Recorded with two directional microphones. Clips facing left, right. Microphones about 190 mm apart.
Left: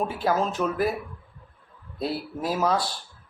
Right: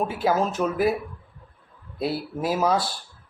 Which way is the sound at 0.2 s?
10° right (ahead or behind).